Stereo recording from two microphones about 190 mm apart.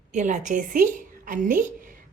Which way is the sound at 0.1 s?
40° right (ahead or behind).